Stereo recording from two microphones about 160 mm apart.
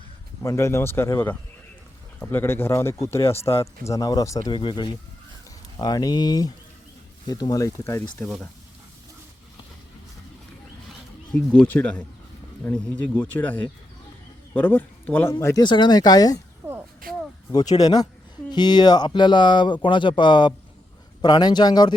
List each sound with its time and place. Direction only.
0.4 s speech: 15° left (ahead or behind)
11.3 s speech: 5° left (ahead or behind)
15.6 s speech: 30° left (ahead or behind)
16.6 s a sound: 15° right (ahead or behind)
17.5 s speech: 25° left (ahead or behind)